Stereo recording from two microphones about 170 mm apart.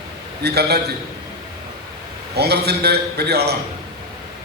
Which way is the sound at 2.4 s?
70° right (ahead or behind).